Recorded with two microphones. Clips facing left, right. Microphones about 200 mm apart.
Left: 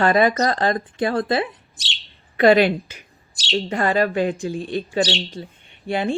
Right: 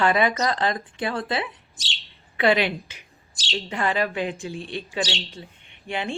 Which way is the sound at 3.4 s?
65° left (ahead or behind).